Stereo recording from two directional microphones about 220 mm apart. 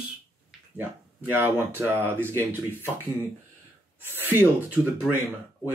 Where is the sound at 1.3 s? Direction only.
10° right (ahead or behind).